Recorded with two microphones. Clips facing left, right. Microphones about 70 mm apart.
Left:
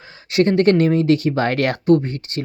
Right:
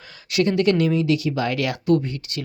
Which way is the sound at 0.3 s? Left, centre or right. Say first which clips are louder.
Left 4 dB; left.